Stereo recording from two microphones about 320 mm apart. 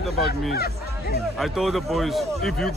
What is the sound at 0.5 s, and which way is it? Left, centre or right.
Speech, left.